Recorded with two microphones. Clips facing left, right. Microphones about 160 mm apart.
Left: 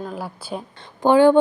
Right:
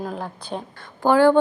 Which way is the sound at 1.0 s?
20° left (ahead or behind).